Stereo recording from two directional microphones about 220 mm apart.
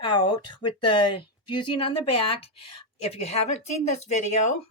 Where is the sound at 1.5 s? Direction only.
20° left (ahead or behind).